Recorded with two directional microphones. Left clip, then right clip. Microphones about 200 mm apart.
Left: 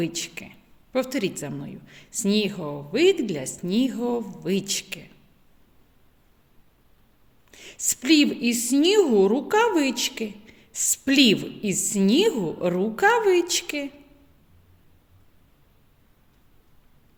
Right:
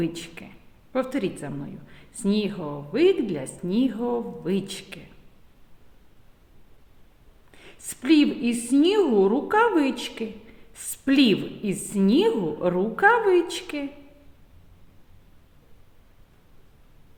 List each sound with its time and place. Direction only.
0.0 s a woman's voice: 35° left (ahead or behind)
7.5 s a woman's voice: 40° left (ahead or behind)